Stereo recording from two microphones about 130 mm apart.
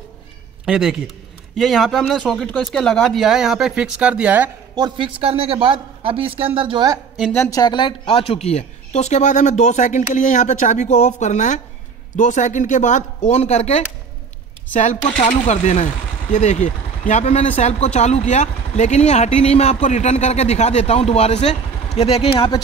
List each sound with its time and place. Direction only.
0.7 s speech: 5° right (ahead or behind)
4.7 s a man's voice: 35° right (ahead or behind)
7.4 s speech: 30° left (ahead or behind); by 13.8 s 60° left (ahead or behind)
14.7 s speech: 70° left (ahead or behind); by 22.6 s 45° left (ahead or behind)